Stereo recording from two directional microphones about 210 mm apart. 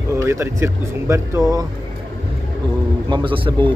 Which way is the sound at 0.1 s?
15° right (ahead or behind).